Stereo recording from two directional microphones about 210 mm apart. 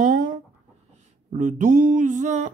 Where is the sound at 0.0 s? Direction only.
40° right (ahead or behind).